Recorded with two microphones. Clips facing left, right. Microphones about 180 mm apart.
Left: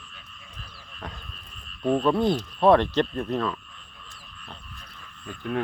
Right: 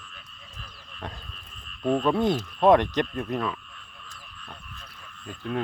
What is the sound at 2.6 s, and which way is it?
Speech, 15° right (ahead or behind).